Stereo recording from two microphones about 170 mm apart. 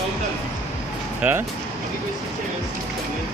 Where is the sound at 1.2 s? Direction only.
10° right (ahead or behind).